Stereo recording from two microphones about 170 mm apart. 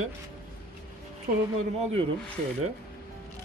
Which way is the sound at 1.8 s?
35° right (ahead or behind).